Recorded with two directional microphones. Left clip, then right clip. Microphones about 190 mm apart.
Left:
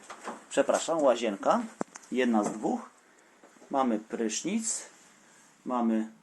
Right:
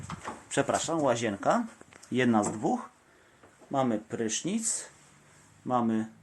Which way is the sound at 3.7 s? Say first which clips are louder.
Left 1 dB; 10° right (ahead or behind).